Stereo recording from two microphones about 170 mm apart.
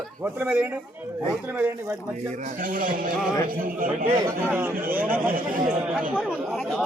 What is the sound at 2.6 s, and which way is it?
A man's voice, 55° right (ahead or behind).